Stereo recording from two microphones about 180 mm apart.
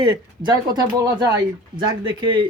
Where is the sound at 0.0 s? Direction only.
25° right (ahead or behind).